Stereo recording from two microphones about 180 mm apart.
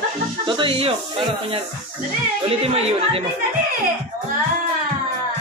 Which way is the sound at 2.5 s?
35° right (ahead or behind).